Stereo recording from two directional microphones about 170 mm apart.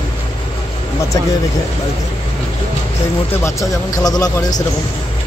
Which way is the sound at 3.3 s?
15° left (ahead or behind).